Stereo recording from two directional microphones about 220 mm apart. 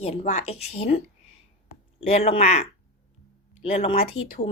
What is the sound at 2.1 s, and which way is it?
Speech, 30° left (ahead or behind).